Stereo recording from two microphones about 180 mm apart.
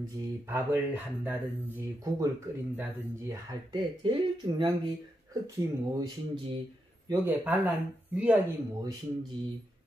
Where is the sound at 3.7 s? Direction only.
25° right (ahead or behind); by 8.4 s 10° right (ahead or behind).